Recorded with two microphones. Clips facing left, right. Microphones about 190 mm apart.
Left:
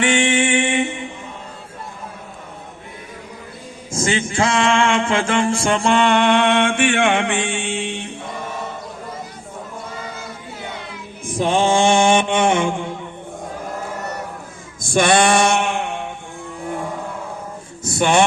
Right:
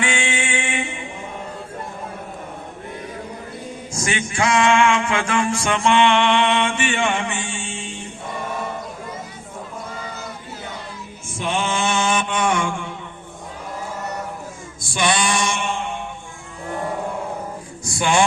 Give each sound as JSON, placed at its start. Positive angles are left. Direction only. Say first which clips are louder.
{"t": 0.0, "sound": "music", "louder": "left 7 dB", "side_deg": 20}
{"t": 3.9, "sound": "mantra", "louder": "left 5 dB", "side_deg": 25}
{"t": 11.3, "sound": "mantra", "louder": "left 7 dB", "side_deg": 30}
{"t": 14.8, "sound": "mantra", "louder": "left 6 dB", "side_deg": 50}
{"t": 17.8, "sound": "a sound", "louder": "left 3 dB", "side_deg": 25}